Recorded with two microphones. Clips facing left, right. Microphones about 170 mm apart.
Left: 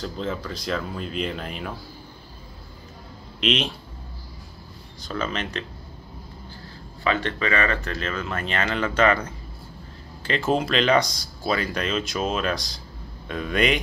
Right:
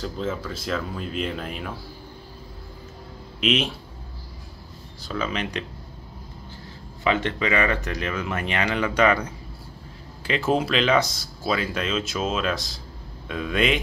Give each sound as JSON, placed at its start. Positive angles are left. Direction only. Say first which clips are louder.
{"t": 0.0, "sound": "speech", "louder": "right 1 dB", "side_deg": -5}
{"t": 3.3, "sound": "speech", "louder": "right 1 dB", "side_deg": -5}
{"t": 5.0, "sound": "speech", "louder": "right 1 dB", "side_deg": -5}
{"t": 7.1, "sound": "speech", "louder": "right 1 dB", "side_deg": -20}